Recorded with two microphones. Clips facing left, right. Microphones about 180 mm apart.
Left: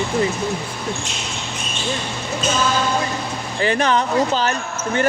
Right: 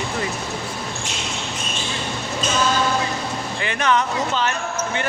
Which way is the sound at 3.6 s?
35° left (ahead or behind).